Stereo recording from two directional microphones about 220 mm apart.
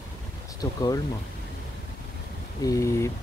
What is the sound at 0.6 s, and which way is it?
Speech, 15° left (ahead or behind).